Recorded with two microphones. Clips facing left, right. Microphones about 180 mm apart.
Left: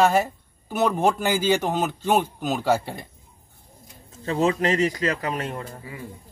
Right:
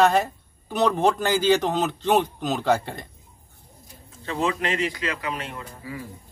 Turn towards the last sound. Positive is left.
turn(degrees=45)  # may be behind; listen again after turning